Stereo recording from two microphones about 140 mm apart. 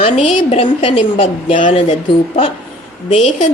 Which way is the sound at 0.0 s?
45° left (ahead or behind).